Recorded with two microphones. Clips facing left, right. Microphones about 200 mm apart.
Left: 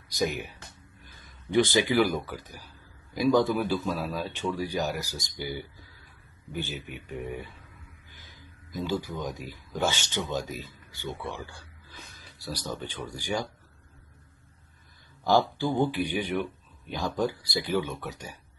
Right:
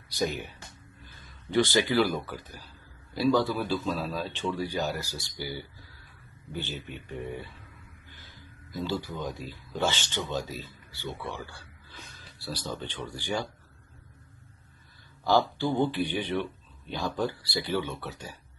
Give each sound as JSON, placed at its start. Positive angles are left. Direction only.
{"t": 0.1, "sound": "a man's voice", "side_deg": 15}
{"t": 1.0, "sound": "a sound", "side_deg": 15}
{"t": 2.0, "sound": "a man's voice", "side_deg": 15}
{"t": 15.2, "sound": "a man's voice", "side_deg": 15}